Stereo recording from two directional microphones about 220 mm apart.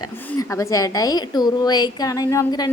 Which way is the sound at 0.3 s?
15° left (ahead or behind).